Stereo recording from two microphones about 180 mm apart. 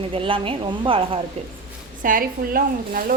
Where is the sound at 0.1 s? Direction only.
30° right (ahead or behind).